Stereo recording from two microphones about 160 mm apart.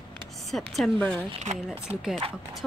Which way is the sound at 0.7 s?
5° left (ahead or behind).